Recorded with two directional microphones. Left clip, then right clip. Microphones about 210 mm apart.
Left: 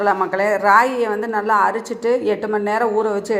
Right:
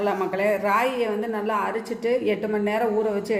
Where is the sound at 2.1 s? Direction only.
15° left (ahead or behind).